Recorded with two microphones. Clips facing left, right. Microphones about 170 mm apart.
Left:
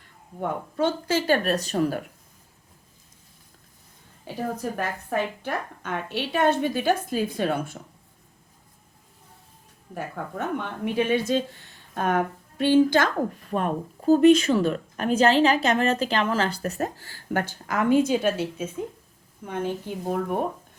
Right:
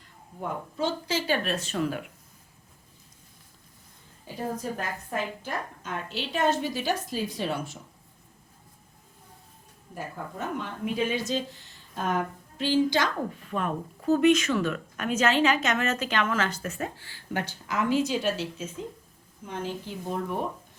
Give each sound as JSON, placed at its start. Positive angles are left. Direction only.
{"t": 0.3, "sound": "speech", "side_deg": 55}
{"t": 4.4, "sound": "a woman's voice", "side_deg": 70}
{"t": 9.9, "sound": "a woman's voice", "side_deg": 65}